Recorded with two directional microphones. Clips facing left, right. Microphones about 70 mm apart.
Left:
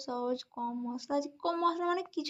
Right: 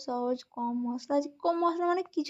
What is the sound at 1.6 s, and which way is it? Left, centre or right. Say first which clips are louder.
Speech: right 1 dB; centre.